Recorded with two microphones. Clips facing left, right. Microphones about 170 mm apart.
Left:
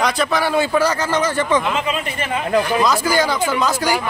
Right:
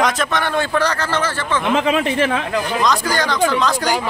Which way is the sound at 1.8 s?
90° right.